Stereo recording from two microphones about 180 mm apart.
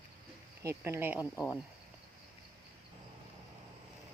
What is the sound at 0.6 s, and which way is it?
Speech, 15° right (ahead or behind).